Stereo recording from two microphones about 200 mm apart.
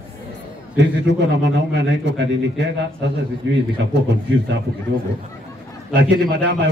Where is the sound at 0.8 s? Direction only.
60° right (ahead or behind).